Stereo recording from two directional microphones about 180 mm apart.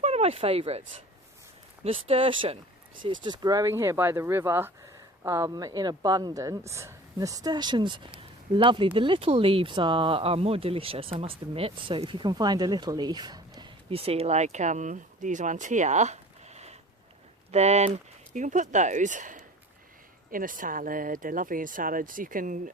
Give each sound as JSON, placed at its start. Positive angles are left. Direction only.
{"t": 0.0, "sound": "a woman's voice", "side_deg": -35}